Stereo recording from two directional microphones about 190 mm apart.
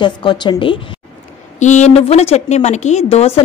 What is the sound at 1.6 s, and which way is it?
A woman's voice, 40° left (ahead or behind).